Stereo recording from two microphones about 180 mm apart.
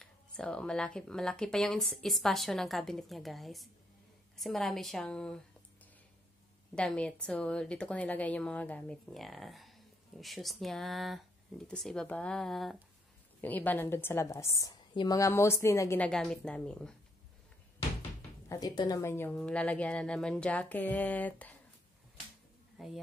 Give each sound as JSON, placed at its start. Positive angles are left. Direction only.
{"t": 0.0, "sound": "a woman's voice", "side_deg": 5}
{"t": 6.7, "sound": "a woman's voice", "side_deg": 5}
{"t": 16.1, "sound": "a woman's voice", "side_deg": 5}
{"t": 18.5, "sound": "a woman's voice", "side_deg": 20}
{"t": 22.8, "sound": "speech", "side_deg": 0}